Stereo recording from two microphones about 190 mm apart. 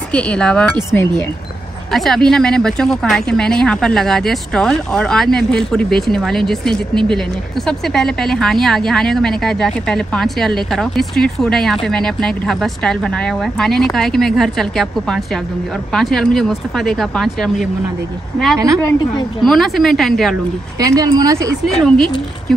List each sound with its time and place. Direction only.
0.1 s speech: 5° left (ahead or behind)
1.9 s speech: centre (ahead or behind)
18.8 s a woman's voice: 15° left (ahead or behind)
19.4 s speech: centre (ahead or behind)
20.8 s speech: 20° right (ahead or behind)
21.6 s speech: centre (ahead or behind)